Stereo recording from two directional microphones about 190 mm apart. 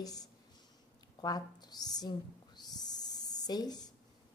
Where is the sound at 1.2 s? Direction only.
20° left (ahead or behind).